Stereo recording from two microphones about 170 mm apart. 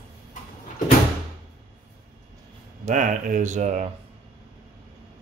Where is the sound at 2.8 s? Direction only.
50° right (ahead or behind).